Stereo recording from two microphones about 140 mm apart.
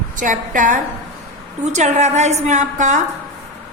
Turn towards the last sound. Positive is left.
turn(degrees=-60)  # may be behind; listen again after turning